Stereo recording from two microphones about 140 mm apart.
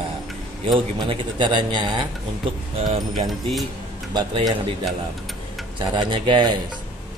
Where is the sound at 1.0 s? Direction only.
35° right (ahead or behind).